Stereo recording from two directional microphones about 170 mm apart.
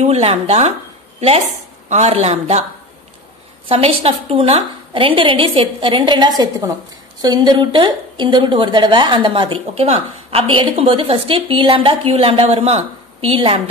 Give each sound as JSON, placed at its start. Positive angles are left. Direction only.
{"t": 0.0, "sound": "a woman's voice", "side_deg": -40}
{"t": 1.9, "sound": "a woman's voice", "side_deg": -40}
{"t": 3.6, "sound": "a woman's voice", "side_deg": -35}